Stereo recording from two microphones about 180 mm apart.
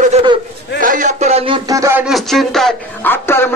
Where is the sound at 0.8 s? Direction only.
45° right (ahead or behind).